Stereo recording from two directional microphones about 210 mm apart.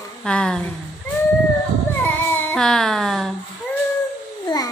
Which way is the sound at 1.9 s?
10° left (ahead or behind).